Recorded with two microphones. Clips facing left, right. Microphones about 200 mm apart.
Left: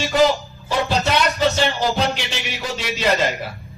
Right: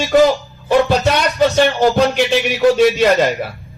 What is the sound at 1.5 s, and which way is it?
A man's voice, 55° right (ahead or behind).